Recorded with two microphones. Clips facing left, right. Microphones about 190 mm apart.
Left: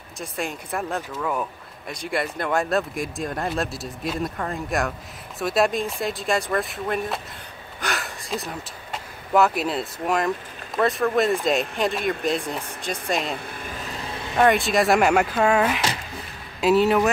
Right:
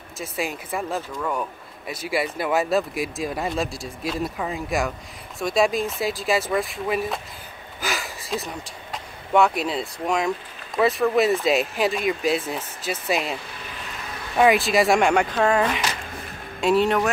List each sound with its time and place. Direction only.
0.2 s speech: centre (ahead or behind)
13.5 s vehicle: 50° left (ahead or behind)
14.3 s speech: 5° right (ahead or behind)